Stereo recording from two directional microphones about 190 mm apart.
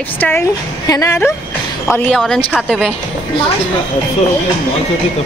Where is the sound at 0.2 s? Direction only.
10° left (ahead or behind).